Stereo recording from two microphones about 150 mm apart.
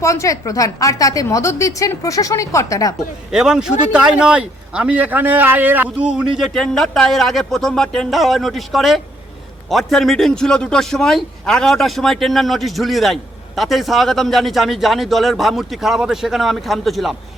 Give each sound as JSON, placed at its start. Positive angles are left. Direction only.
{"t": 0.0, "sound": "a woman's voice", "side_deg": 20}
{"t": 3.3, "sound": "speech", "side_deg": -5}